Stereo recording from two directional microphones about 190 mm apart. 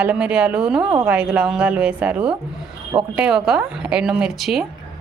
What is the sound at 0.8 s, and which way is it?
Speech, 25° right (ahead or behind).